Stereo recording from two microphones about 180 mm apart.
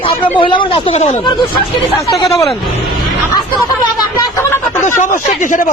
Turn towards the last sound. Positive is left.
turn(degrees=45)  # may be behind; listen again after turning